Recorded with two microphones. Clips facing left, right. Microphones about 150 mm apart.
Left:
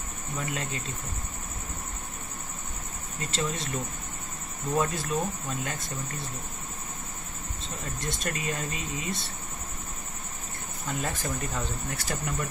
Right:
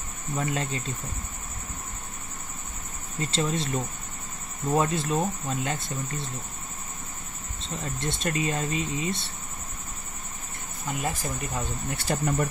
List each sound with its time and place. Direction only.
0.4 s speech: 30° right (ahead or behind)
3.2 s speech: 30° right (ahead or behind)
7.6 s speech: 25° right (ahead or behind)
10.9 s speech: 10° right (ahead or behind); by 12.4 s 30° right (ahead or behind)